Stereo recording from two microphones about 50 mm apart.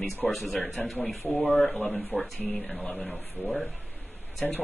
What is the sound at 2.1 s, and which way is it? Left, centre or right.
Speech, left.